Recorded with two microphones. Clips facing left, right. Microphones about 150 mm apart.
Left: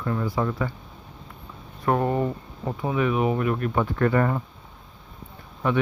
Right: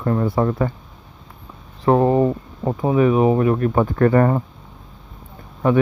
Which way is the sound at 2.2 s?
40° right (ahead or behind).